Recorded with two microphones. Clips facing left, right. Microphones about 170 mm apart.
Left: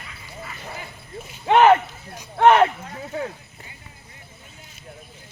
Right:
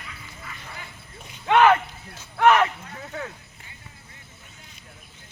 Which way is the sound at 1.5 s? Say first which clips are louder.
Left 3 dB; 25° left (ahead or behind).